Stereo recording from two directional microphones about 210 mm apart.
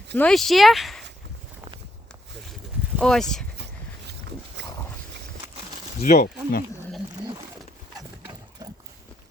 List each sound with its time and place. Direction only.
0.2 s speech: 5° left (ahead or behind)
2.5 s a sound: centre (ahead or behind)
4.6 s dog: 55° right (ahead or behind)
6.0 s speech: 45° left (ahead or behind)
7.2 s wild animals: 20° right (ahead or behind)